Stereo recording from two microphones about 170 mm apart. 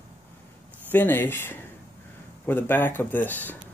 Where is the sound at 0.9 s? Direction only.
10° left (ahead or behind).